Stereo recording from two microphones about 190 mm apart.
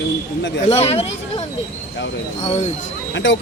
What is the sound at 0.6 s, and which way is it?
Speech, 35° left (ahead or behind).